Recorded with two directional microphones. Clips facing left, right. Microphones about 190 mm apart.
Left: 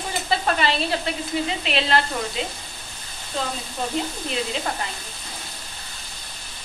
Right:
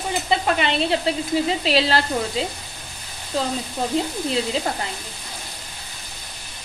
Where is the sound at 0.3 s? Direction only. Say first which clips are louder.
Right 1 dB; 20° right (ahead or behind).